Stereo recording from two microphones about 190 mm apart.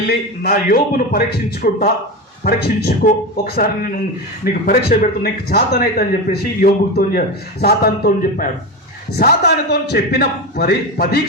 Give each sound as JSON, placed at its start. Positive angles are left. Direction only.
{"t": 0.4, "sound": "a man's voice", "side_deg": 50}